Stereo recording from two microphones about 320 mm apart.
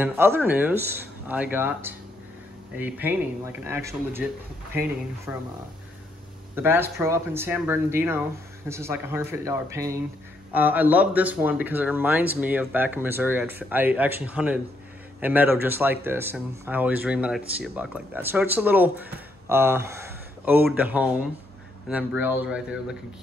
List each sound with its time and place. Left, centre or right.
0.0 s speech: centre
6.5 s speech: centre